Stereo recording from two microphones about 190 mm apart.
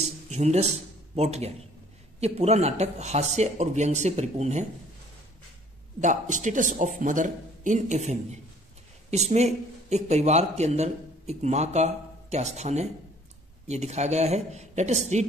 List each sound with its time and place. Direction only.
0.0 s a sound: 35° right (ahead or behind)
2.1 s speech: 35° right (ahead or behind)
5.9 s speech: 40° right (ahead or behind)